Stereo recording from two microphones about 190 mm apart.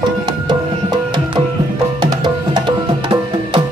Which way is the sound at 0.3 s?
20° right (ahead or behind).